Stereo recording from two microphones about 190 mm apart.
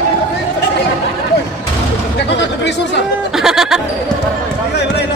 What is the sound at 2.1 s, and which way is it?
Chatter, 65° left (ahead or behind).